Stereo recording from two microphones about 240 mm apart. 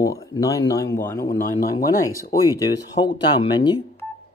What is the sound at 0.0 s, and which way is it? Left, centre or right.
Speech, centre.